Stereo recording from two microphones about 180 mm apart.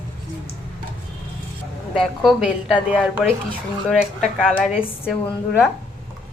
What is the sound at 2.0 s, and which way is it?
A woman's voice, centre (ahead or behind).